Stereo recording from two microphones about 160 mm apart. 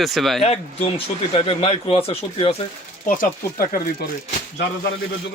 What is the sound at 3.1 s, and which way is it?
Speech, 65° left (ahead or behind).